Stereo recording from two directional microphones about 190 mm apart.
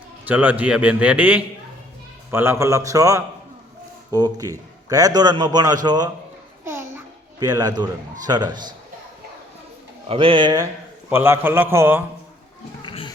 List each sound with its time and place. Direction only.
0.3 s a man's voice: 10° right (ahead or behind)
6.7 s babbling: 10° right (ahead or behind)
8.3 s a man's voice: 20° right (ahead or behind)
10.1 s a man's voice: 30° right (ahead or behind)
11.1 s a man's voice: 10° right (ahead or behind)
12.8 s children playing: 25° left (ahead or behind)